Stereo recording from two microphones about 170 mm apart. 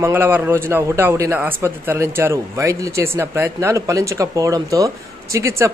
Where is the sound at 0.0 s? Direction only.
15° right (ahead or behind).